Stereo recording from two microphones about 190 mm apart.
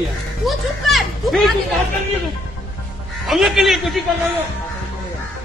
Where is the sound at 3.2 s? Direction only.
Centre (ahead or behind).